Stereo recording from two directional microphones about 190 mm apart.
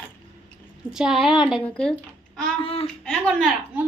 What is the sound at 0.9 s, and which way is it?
Speech, centre (ahead or behind).